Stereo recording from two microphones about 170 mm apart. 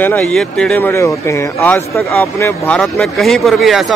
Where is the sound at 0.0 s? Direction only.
10° left (ahead or behind).